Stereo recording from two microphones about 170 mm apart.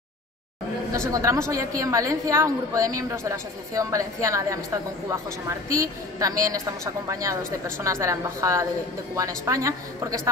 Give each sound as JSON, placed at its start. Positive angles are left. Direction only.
{"t": 0.9, "sound": "a woman's voice", "side_deg": -15}